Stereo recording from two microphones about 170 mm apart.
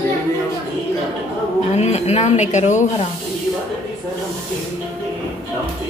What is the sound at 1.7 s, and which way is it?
Speech, 40° left (ahead or behind).